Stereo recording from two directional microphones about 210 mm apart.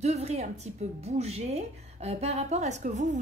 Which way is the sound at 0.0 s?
30° right (ahead or behind).